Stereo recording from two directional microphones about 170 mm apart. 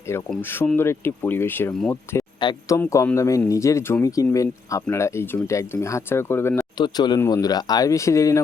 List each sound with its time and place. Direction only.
0.3 s speech: 15° left (ahead or behind)